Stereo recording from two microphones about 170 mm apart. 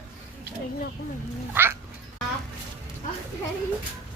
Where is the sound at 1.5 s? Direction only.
15° right (ahead or behind).